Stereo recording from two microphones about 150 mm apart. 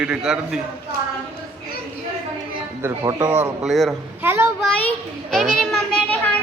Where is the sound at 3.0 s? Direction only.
30° right (ahead or behind).